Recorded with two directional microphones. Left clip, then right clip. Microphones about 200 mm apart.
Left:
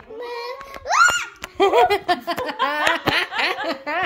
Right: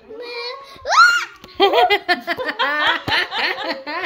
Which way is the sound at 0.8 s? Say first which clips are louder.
Right 4 dB; 20° right (ahead or behind).